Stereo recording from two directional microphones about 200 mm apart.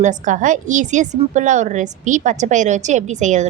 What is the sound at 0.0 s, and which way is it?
A woman's voice, 40° right (ahead or behind).